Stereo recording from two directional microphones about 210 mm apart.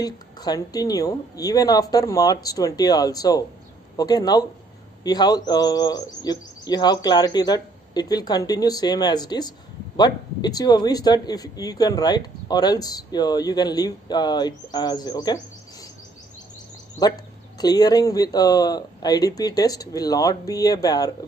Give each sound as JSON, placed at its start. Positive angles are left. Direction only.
{"t": 0.0, "sound": "speech", "side_deg": 20}
{"t": 17.6, "sound": "speech", "side_deg": 20}